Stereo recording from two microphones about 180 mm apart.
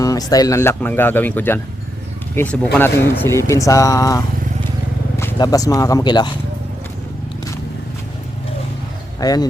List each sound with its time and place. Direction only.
0.0 s speech: 20° left (ahead or behind)
9.2 s speech: 20° left (ahead or behind)